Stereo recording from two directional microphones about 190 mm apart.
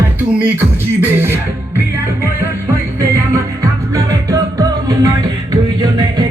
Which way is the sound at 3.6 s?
20° right (ahead or behind).